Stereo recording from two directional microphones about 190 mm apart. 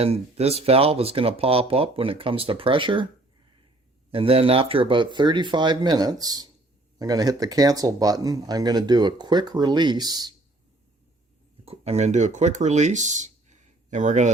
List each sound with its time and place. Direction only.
0.0 s speech: 30° right (ahead or behind)
4.1 s speech: 30° right (ahead or behind)
11.6 s speech: 35° right (ahead or behind)